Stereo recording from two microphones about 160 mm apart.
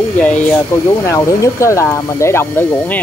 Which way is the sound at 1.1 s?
20° left (ahead or behind).